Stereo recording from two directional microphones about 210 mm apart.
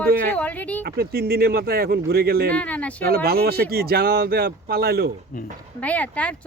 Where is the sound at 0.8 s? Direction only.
45° right (ahead or behind).